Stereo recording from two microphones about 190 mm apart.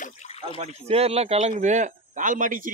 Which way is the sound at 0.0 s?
35° left (ahead or behind).